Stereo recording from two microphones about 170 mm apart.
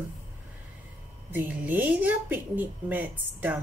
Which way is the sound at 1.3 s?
10° right (ahead or behind).